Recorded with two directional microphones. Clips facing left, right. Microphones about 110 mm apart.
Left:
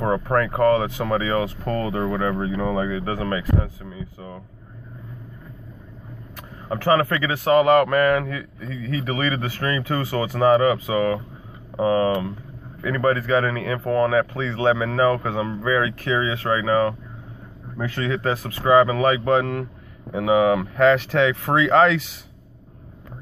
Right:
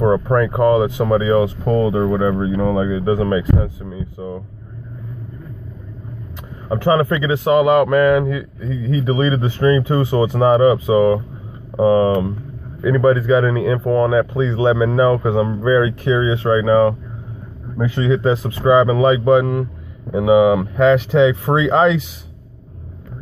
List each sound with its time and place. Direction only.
0.0 s speech: 15° right (ahead or behind)
6.7 s speech: 15° right (ahead or behind)